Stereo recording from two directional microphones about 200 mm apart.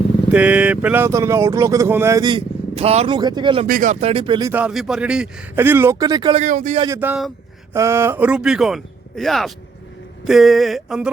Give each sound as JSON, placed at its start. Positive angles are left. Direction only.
{"t": 0.3, "sound": "speech", "side_deg": -5}
{"t": 3.7, "sound": "speech", "side_deg": -40}
{"t": 4.1, "sound": "speech", "side_deg": -25}
{"t": 6.4, "sound": "speech", "side_deg": -40}
{"t": 6.8, "sound": "speech", "side_deg": -10}